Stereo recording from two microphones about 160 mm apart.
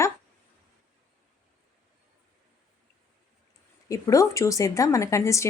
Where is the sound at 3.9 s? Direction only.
20° left (ahead or behind).